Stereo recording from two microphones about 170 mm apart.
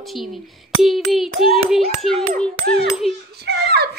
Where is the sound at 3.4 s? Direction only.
70° right (ahead or behind).